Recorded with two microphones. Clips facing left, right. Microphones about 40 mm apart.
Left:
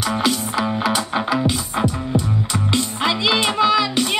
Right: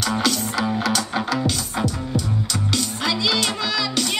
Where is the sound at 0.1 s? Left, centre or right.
Centre.